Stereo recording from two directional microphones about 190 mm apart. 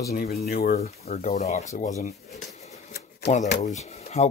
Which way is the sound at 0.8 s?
35° left (ahead or behind).